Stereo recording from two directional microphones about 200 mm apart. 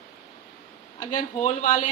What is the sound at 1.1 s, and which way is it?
Speech, 40° left (ahead or behind).